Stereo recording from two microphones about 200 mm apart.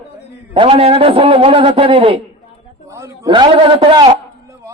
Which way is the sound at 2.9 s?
15° right (ahead or behind).